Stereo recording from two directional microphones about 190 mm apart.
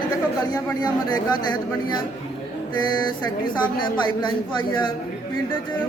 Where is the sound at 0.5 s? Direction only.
20° left (ahead or behind).